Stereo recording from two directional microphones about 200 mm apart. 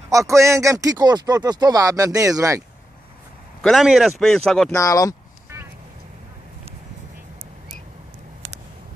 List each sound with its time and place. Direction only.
0.1 s speech: 15° right (ahead or behind)
3.6 s speech: centre (ahead or behind)
4.7 s speech: 15° left (ahead or behind)